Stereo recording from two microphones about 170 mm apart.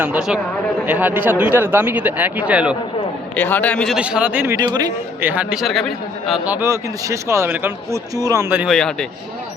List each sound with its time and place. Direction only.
0.0 s a man's voice: 5° right (ahead or behind)
3.3 s a man's voice: 10° left (ahead or behind)
3.9 s a man's voice: 5° right (ahead or behind)
4.5 s a man's voice: 20° right (ahead or behind)
5.2 s a man's voice: 10° right (ahead or behind)
8.7 s a man's voice: 5° left (ahead or behind)